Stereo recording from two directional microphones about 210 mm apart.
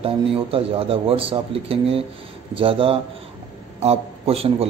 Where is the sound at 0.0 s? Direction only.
25° right (ahead or behind).